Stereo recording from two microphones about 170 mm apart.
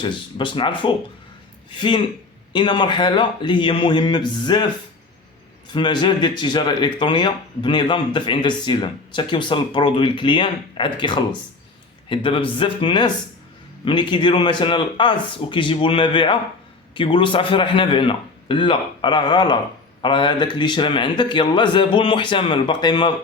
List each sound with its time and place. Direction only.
0.0 s speech: 30° left (ahead or behind)
5.7 s speech: 25° left (ahead or behind)